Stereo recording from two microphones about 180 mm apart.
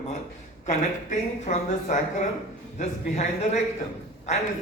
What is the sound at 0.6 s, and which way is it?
A man's voice, 40° left (ahead or behind).